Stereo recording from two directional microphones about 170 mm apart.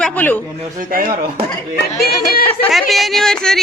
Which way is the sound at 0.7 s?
55° right (ahead or behind).